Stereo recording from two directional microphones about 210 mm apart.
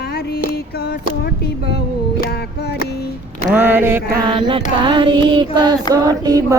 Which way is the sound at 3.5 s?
10° right (ahead or behind).